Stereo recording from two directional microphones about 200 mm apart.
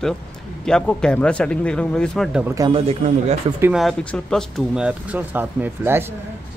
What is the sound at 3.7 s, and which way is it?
Speech, centre (ahead or behind).